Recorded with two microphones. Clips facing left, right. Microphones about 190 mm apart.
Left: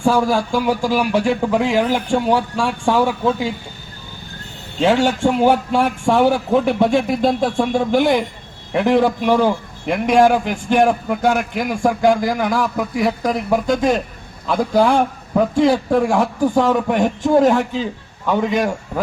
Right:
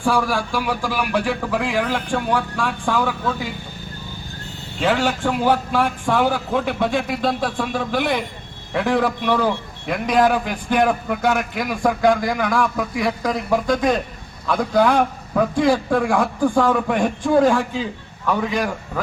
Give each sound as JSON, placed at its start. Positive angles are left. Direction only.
{"t": 0.0, "sound": "a man's voice", "side_deg": 25}
{"t": 4.8, "sound": "a man's voice", "side_deg": 25}